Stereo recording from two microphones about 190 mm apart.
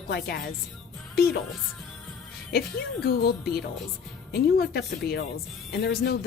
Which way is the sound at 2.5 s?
55° left (ahead or behind).